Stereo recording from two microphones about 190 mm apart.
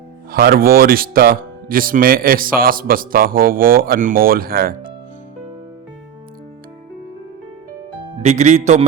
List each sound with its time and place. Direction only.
0.3 s speech: 55° right (ahead or behind)
8.2 s speech: 35° right (ahead or behind)